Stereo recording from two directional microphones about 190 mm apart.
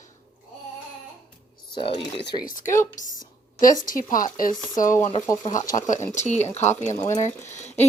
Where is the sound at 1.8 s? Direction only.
25° left (ahead or behind).